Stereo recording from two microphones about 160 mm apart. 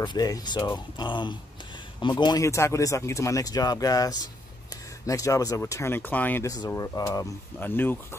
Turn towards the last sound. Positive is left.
turn(degrees=15)  # may be behind; listen again after turning